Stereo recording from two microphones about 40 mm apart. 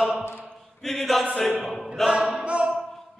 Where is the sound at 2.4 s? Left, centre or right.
Right.